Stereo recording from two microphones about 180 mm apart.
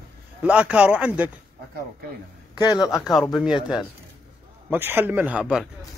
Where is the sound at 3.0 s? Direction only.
Centre (ahead or behind).